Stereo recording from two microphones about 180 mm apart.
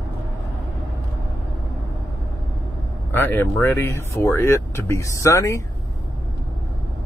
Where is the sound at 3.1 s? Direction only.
10° left (ahead or behind).